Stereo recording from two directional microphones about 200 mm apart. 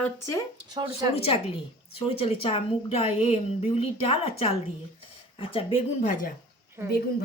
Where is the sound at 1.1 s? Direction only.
30° left (ahead or behind).